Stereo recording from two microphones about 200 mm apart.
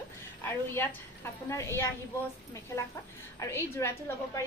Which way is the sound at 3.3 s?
15° left (ahead or behind).